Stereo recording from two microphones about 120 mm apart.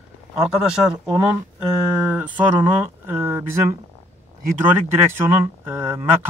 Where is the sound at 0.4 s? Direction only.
5° right (ahead or behind).